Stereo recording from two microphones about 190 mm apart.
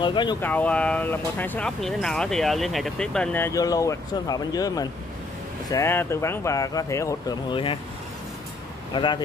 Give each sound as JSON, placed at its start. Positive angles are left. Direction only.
{"t": 0.0, "sound": "speech", "side_deg": 25}
{"t": 0.4, "sound": "speech", "side_deg": 10}
{"t": 8.9, "sound": "speech", "side_deg": 25}